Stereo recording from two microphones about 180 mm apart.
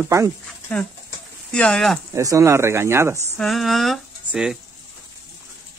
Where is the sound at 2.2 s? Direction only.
15° right (ahead or behind).